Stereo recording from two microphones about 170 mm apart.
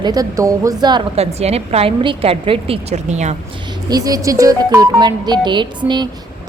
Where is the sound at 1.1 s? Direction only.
35° right (ahead or behind).